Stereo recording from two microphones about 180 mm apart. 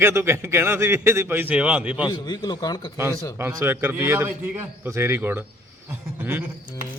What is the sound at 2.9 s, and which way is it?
A man's voice, 15° right (ahead or behind).